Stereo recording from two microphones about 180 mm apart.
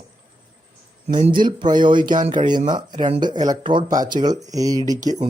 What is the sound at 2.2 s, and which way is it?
Speech, 45° right (ahead or behind).